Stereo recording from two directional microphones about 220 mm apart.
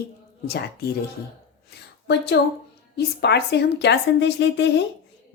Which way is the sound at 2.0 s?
50° left (ahead or behind).